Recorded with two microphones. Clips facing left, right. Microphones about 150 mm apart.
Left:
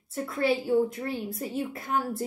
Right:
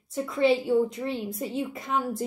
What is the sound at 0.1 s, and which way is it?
A woman's voice, centre (ahead or behind).